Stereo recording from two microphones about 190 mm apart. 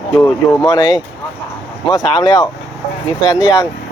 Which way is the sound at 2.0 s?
20° left (ahead or behind).